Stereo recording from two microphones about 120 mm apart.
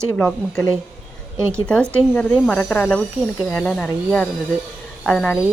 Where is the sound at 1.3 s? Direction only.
20° right (ahead or behind).